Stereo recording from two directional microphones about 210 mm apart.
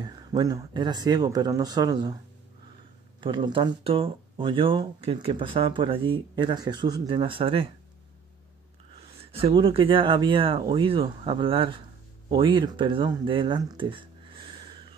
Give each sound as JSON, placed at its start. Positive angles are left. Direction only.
{"t": 0.0, "sound": "speech", "side_deg": -20}
{"t": 3.2, "sound": "speech", "side_deg": -25}
{"t": 9.3, "sound": "speech", "side_deg": -25}